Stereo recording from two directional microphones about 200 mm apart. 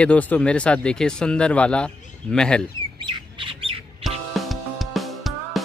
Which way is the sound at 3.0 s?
25° right (ahead or behind).